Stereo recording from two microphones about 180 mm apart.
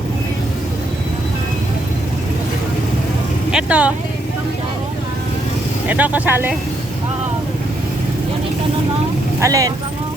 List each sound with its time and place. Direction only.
3.5 s speech: 5° right (ahead or behind)
5.9 s speech: 10° right (ahead or behind)
9.4 s speech: 20° right (ahead or behind)